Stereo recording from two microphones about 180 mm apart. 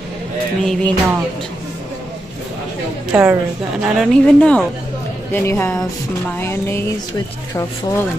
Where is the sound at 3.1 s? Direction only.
5° right (ahead or behind).